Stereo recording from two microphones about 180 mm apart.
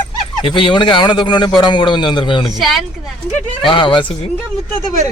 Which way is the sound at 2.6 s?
Centre (ahead or behind).